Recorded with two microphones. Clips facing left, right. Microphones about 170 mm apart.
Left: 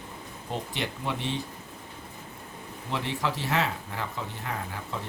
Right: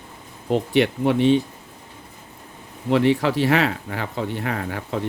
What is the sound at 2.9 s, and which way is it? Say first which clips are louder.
Speech: right 13 dB; 70° right (ahead or behind).